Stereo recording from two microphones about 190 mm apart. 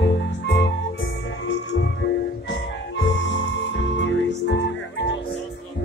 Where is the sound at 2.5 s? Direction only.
70° left (ahead or behind).